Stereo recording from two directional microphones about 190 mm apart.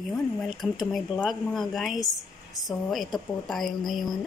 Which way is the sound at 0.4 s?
Centre (ahead or behind).